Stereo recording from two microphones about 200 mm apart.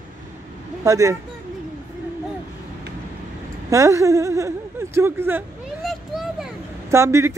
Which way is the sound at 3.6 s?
15° right (ahead or behind).